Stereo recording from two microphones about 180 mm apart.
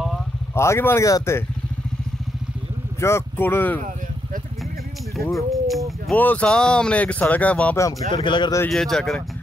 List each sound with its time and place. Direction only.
0.6 s speech: 15° left (ahead or behind)
3.0 s speech: 15° left (ahead or behind)
5.3 s speech: centre (ahead or behind)
8.1 s speech: 25° left (ahead or behind)
8.6 s speech: centre (ahead or behind)